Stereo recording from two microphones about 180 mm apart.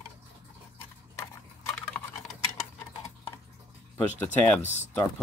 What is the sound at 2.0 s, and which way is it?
Typing, 10° left (ahead or behind).